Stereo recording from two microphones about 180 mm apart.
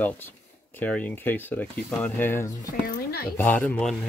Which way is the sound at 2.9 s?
60° left (ahead or behind).